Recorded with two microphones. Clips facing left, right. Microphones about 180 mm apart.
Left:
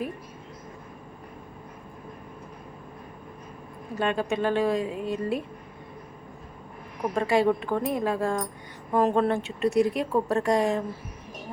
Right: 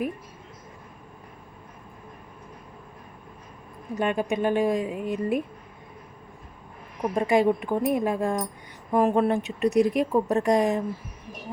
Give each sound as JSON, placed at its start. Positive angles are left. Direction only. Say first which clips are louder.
{"t": 3.9, "sound": "a woman's voice", "louder": "right 1 dB", "side_deg": -15}
{"t": 7.1, "sound": "a woman's voice", "louder": "right 1 dB", "side_deg": -15}